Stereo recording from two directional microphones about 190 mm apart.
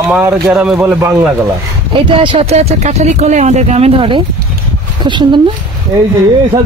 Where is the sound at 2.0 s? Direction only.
30° right (ahead or behind).